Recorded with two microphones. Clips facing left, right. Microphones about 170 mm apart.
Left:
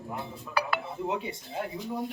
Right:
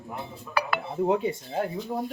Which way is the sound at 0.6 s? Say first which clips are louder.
Right 4 dB; 60° right (ahead or behind).